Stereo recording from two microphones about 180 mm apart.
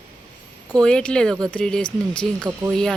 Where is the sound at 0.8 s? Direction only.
5° left (ahead or behind).